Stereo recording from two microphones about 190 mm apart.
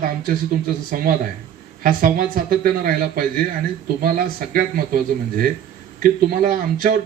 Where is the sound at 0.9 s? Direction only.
50° right (ahead or behind).